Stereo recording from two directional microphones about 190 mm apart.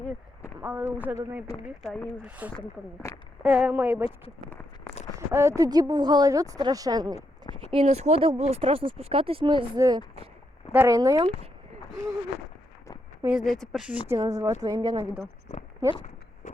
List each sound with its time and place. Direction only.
0.6 s speech: 10° right (ahead or behind)
1.9 s speech: 5° left (ahead or behind)
2.2 s speech: 5° right (ahead or behind)
3.1 s speech: 15° left (ahead or behind)
3.4 s speech: 5° right (ahead or behind)
5.3 s speech: 15° right (ahead or behind)
13.2 s speech: 5° right (ahead or behind)
14.2 s speech: 15° right (ahead or behind)